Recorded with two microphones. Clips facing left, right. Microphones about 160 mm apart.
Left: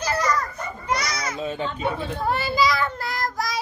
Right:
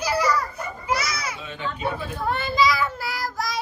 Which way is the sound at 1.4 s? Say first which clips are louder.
Left 8 dB; 40° left (ahead or behind).